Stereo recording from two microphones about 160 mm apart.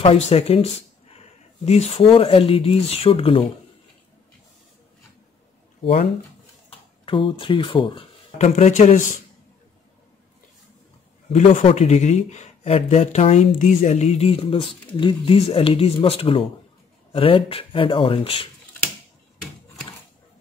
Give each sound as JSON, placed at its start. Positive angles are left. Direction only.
{"t": 0.0, "sound": "speech", "side_deg": 40}
{"t": 1.7, "sound": "speech", "side_deg": 40}
{"t": 7.1, "sound": "speech", "side_deg": 30}
{"t": 8.5, "sound": "speech", "side_deg": 50}
{"t": 11.6, "sound": "speech", "side_deg": 45}